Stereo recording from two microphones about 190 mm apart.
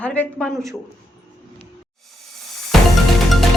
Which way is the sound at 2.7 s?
Centre (ahead or behind).